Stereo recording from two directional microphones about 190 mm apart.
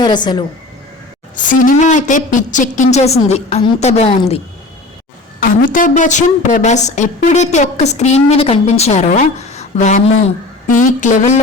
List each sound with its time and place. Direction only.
0.0 s a woman's voice: 25° left (ahead or behind)
1.4 s a woman's voice: 40° left (ahead or behind)
5.4 s a woman's voice: 45° left (ahead or behind)